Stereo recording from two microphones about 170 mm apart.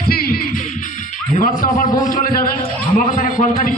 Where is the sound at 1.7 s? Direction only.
50° left (ahead or behind).